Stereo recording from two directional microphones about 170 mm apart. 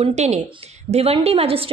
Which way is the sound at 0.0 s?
40° right (ahead or behind).